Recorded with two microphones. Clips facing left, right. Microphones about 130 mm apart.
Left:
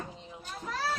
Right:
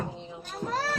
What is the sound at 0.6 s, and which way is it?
Children playing, 40° right (ahead or behind).